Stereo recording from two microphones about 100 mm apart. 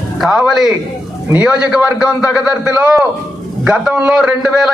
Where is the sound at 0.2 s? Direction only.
5° right (ahead or behind).